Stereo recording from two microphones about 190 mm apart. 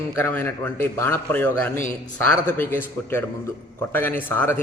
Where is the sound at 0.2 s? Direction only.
10° left (ahead or behind).